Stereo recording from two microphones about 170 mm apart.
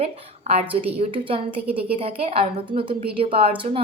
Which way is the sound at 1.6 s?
10° right (ahead or behind).